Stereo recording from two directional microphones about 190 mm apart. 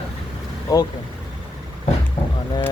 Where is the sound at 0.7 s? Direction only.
20° left (ahead or behind).